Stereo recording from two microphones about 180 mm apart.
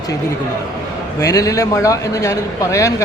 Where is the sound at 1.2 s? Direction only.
15° left (ahead or behind).